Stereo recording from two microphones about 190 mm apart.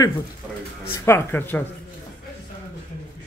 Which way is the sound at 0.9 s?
15° left (ahead or behind).